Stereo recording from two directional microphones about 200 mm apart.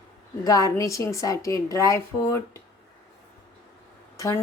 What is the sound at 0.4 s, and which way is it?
A woman's voice, 15° left (ahead or behind).